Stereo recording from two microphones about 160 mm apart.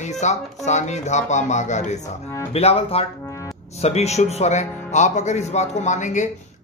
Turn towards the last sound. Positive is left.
turn(degrees=50)  # may be behind; listen again after turning